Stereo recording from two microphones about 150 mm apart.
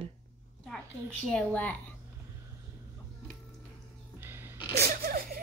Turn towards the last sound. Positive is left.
turn(degrees=-85)